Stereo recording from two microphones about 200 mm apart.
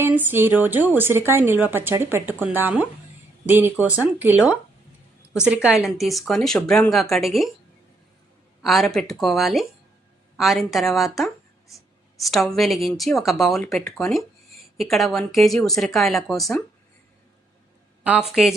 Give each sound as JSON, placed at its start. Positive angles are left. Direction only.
{"t": 0.0, "sound": "speech", "side_deg": -10}
{"t": 5.6, "sound": "a woman's voice", "side_deg": 0}
{"t": 8.6, "sound": "a woman's voice", "side_deg": 0}
{"t": 18.0, "sound": "a woman's voice", "side_deg": -5}